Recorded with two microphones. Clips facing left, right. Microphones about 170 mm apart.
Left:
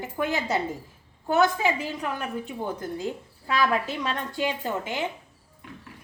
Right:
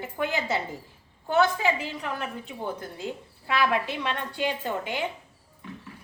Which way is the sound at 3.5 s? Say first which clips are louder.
Left 1 dB; 40° left (ahead or behind).